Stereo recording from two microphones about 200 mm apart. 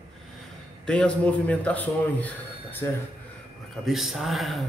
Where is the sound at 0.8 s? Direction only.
5° left (ahead or behind).